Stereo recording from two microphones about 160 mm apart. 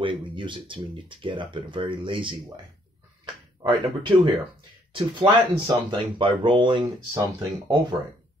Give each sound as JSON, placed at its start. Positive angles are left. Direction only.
{"t": 0.0, "sound": "speech", "side_deg": -30}
{"t": 3.6, "sound": "speech", "side_deg": -30}
{"t": 6.8, "sound": "speech", "side_deg": -20}